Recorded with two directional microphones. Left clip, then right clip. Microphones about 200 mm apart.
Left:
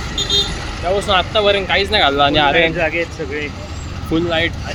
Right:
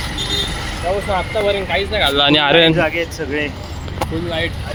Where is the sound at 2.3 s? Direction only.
35° right (ahead or behind).